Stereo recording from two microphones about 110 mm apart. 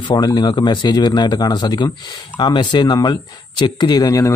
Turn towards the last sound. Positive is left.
turn(degrees=30)  # may be behind; listen again after turning